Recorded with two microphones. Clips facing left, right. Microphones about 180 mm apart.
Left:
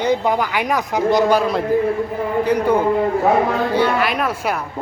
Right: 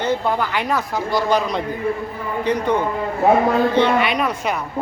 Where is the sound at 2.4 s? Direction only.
10° left (ahead or behind).